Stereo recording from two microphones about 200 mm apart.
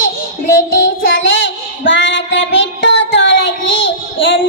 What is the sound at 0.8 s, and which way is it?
Child singing, 70° left (ahead or behind).